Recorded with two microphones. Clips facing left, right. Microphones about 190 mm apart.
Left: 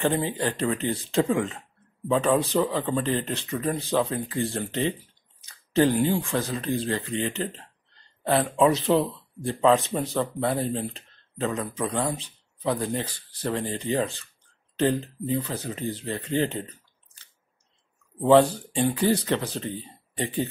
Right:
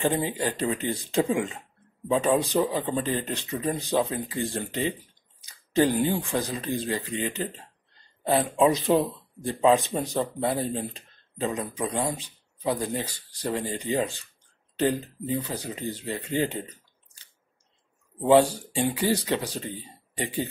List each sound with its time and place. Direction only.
0.0 s speech: 15° right (ahead or behind)
5.4 s a sound: 15° right (ahead or behind)
6.0 s speech: 15° right (ahead or behind)
15.4 s speech: 15° right (ahead or behind)
18.3 s speech: 10° right (ahead or behind)